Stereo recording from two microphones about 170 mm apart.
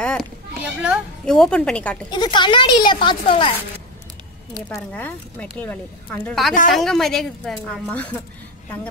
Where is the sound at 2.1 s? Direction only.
25° left (ahead or behind).